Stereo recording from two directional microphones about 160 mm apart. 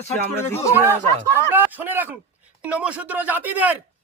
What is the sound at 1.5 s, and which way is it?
Speech, 10° right (ahead or behind).